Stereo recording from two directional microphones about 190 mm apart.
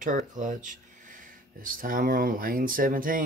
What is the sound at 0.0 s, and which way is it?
Speech, 40° right (ahead or behind).